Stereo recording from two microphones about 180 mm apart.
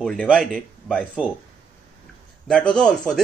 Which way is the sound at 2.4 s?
5° left (ahead or behind).